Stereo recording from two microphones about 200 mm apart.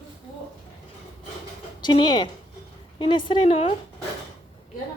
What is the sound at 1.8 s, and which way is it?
A woman's voice, 20° left (ahead or behind).